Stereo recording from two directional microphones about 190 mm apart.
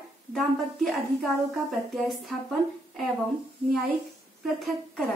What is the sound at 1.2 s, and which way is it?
A woman's voice, centre (ahead or behind).